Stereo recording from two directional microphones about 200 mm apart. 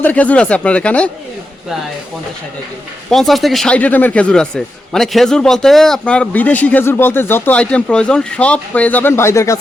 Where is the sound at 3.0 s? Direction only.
Centre (ahead or behind).